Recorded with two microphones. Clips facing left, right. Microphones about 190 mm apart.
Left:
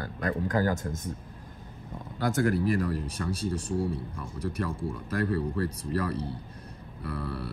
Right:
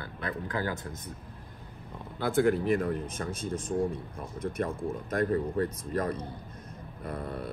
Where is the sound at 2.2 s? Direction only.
40° left (ahead or behind).